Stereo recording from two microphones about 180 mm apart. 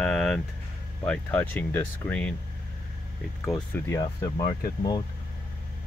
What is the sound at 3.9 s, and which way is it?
Speech, 15° left (ahead or behind).